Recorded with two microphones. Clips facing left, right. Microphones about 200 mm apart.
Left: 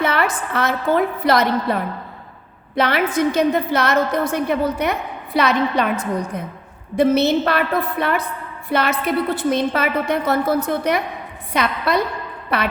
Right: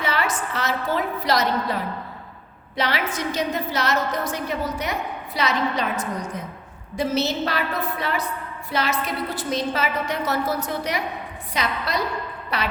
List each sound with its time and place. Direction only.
0.0 s a woman's voice: 60° left (ahead or behind)